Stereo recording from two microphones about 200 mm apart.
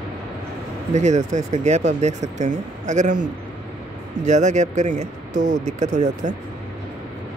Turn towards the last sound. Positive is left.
turn(degrees=-35)  # may be behind; listen again after turning